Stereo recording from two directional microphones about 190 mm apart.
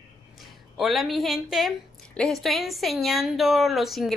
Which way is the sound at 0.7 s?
Centre (ahead or behind).